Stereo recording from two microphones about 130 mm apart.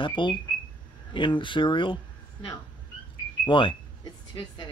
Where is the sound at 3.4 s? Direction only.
40° left (ahead or behind).